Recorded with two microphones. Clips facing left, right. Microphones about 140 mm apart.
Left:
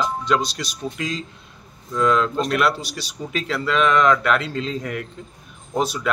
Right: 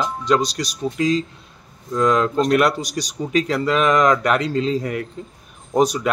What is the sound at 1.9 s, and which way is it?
A man's voice, 40° right (ahead or behind).